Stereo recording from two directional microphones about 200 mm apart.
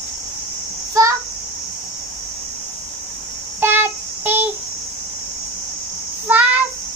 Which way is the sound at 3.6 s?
10° right (ahead or behind).